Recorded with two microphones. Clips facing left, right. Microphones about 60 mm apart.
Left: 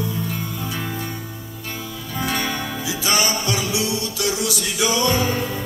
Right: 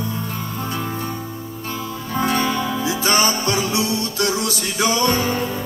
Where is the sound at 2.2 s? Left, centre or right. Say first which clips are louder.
Right 4 dB; right.